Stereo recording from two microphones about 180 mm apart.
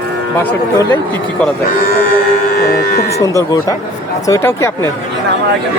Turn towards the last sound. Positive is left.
turn(degrees=15)  # may be behind; listen again after turning